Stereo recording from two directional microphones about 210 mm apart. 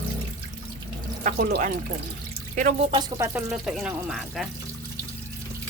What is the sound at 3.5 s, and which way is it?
Speech, centre (ahead or behind).